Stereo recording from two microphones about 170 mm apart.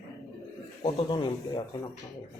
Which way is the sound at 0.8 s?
35° left (ahead or behind).